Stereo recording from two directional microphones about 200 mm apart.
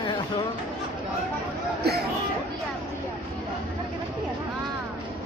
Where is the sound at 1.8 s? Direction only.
55° right (ahead or behind).